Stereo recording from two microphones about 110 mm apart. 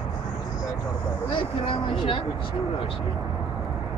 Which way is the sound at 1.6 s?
55° left (ahead or behind).